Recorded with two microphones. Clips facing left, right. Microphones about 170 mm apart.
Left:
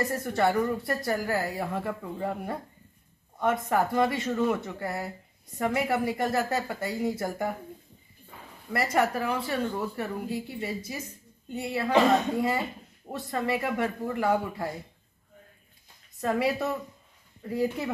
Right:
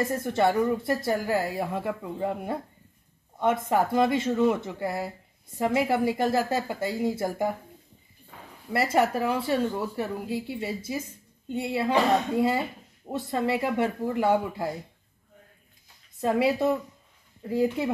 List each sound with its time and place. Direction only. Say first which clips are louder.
0.1 s a woman's voice: right 2 dB; 25° right (ahead or behind)
8.9 s a woman's voice: right 2 dB; 25° right (ahead or behind)
16.2 s a woman's voice: right 3 dB; 25° right (ahead or behind)